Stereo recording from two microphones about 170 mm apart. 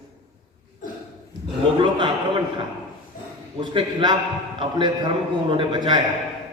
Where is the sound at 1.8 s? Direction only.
30° right (ahead or behind).